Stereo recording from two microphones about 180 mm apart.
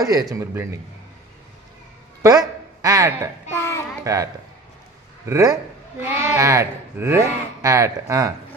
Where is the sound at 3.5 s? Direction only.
15° left (ahead or behind).